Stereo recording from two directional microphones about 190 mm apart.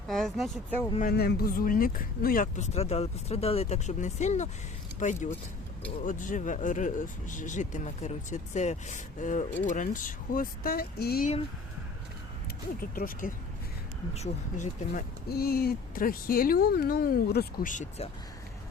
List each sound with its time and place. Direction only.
0.1 s speech: centre (ahead or behind)
0.9 s speech: 50° left (ahead or behind)
12.9 s speech: 50° left (ahead or behind)
14.1 s speech: 35° left (ahead or behind)